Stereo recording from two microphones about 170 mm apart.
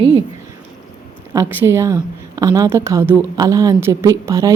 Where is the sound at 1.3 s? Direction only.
15° right (ahead or behind).